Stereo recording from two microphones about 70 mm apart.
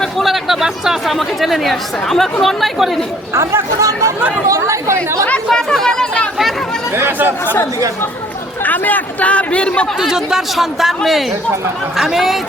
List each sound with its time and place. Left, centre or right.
0.0 s speech: centre
3.3 s speech: right
5.5 s chatter: centre
6.9 s speech: right
7.4 s a man's voice: left
10.0 s speech: centre